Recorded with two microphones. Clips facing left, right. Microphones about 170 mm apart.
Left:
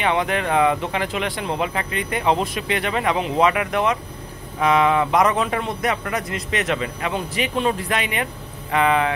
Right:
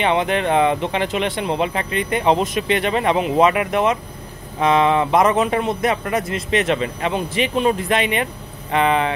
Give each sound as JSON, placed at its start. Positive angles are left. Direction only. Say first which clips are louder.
{"t": 0.0, "sound": "a man's voice", "louder": "right 3 dB", "side_deg": -25}